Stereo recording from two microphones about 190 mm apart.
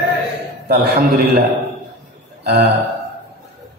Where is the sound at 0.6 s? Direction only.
60° right (ahead or behind).